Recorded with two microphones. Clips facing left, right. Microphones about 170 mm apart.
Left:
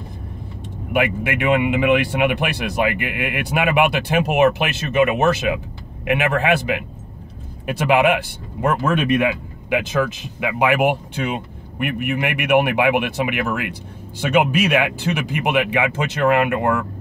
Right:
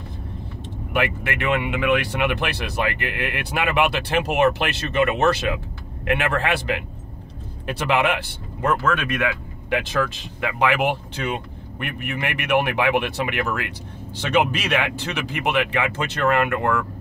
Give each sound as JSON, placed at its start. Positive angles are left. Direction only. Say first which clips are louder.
{"t": 0.9, "sound": "speech", "louder": "left 4 dB", "side_deg": 10}
{"t": 7.6, "sound": "speech", "louder": "left 5 dB", "side_deg": 10}
{"t": 10.4, "sound": "speech", "louder": "left 3 dB", "side_deg": 10}